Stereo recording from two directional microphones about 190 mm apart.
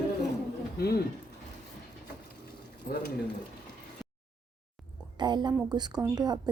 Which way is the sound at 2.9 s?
50° left (ahead or behind).